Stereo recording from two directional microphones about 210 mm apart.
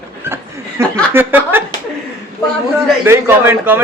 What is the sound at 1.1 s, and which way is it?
Speech, 10° right (ahead or behind).